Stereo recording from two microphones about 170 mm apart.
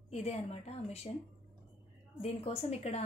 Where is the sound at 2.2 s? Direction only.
35° left (ahead or behind).